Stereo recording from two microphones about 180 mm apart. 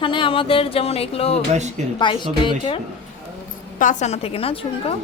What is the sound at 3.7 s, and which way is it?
Speech, 45° left (ahead or behind).